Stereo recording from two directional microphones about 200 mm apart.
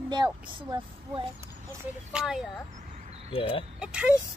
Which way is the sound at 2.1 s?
5° right (ahead or behind).